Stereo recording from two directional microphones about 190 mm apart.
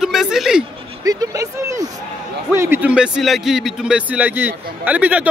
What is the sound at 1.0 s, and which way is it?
Speech, 20° right (ahead or behind).